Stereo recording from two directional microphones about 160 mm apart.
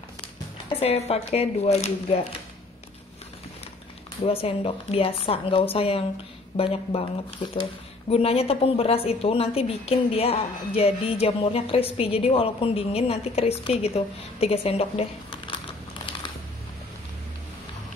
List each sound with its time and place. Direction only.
0.7 s a woman's voice: 40° left (ahead or behind)
4.2 s a woman's voice: 40° left (ahead or behind)